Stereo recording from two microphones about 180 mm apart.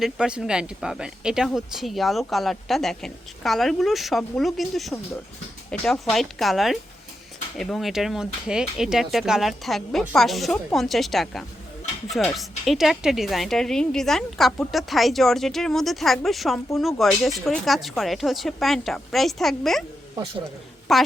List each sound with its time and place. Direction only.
0.0 s speech: 5° right (ahead or behind)
20.9 s speech: centre (ahead or behind)